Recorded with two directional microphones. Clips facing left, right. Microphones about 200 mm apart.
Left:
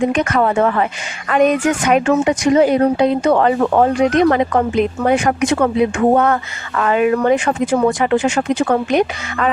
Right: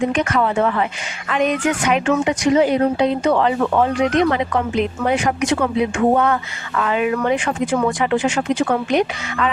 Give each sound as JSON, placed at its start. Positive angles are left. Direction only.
{"t": 0.1, "sound": "speech", "side_deg": 45}